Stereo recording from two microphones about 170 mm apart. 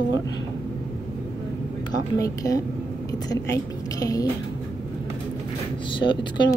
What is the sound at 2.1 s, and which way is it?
A woman's voice, 20° left (ahead or behind).